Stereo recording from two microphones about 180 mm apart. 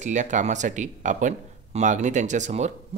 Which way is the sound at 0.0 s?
45° right (ahead or behind).